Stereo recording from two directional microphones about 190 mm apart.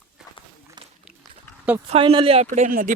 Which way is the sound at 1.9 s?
30° right (ahead or behind).